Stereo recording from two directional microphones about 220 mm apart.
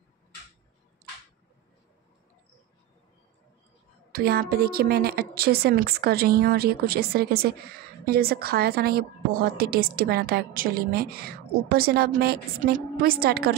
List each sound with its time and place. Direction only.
4.1 s a woman's voice: 45° right (ahead or behind)